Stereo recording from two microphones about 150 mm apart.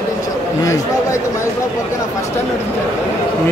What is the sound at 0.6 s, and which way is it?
Speech, 20° left (ahead or behind).